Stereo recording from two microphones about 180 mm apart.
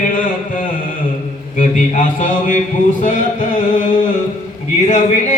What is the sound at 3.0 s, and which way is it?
Chant, 45° left (ahead or behind).